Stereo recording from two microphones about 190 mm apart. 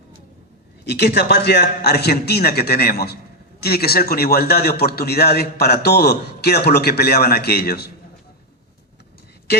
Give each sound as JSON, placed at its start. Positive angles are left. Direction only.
{"t": 0.9, "sound": "a man's voice", "side_deg": 60}